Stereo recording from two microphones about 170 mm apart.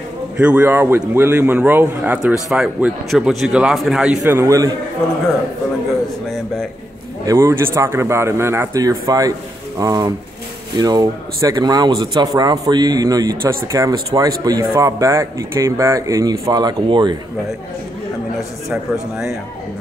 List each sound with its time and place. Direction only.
0.4 s a man's voice: 10° right (ahead or behind)
6.3 s a man's voice: 5° left (ahead or behind)
7.2 s a man's voice: 15° right (ahead or behind)
18.7 s a man's voice: centre (ahead or behind)